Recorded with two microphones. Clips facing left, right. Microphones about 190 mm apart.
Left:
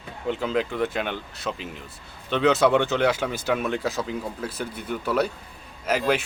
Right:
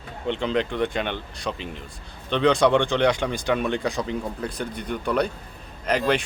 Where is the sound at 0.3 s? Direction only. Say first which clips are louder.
Right 1 dB; 5° left (ahead or behind).